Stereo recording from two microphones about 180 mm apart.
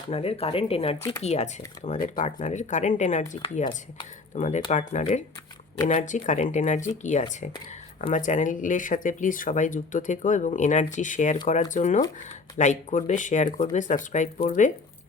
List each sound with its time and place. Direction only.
0.1 s speech: 35° left (ahead or behind)